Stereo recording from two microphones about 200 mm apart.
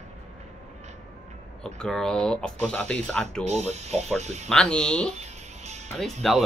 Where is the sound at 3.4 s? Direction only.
35° right (ahead or behind).